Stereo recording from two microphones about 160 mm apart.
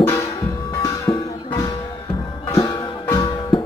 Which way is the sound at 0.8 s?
20° left (ahead or behind).